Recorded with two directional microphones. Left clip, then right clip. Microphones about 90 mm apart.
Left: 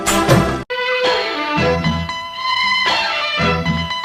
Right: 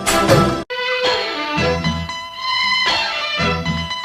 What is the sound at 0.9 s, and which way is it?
Music, 45° left (ahead or behind).